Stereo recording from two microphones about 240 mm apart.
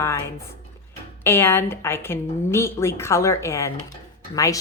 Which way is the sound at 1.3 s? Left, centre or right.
Centre.